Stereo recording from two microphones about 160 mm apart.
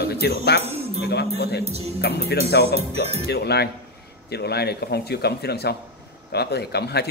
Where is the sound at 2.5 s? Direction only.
90° left.